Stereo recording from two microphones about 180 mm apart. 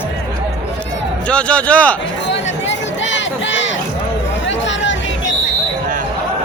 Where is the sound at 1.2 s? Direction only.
5° left (ahead or behind).